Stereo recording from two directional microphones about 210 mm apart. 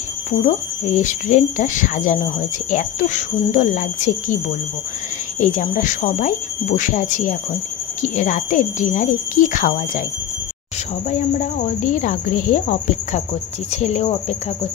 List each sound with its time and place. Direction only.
0.5 s speech: 35° left (ahead or behind)
5.4 s speech: 35° left (ahead or behind)
11.1 s speech: 35° left (ahead or behind)